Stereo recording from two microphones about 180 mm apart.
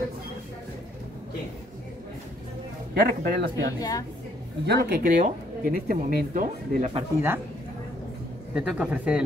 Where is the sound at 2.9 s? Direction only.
60° right (ahead or behind).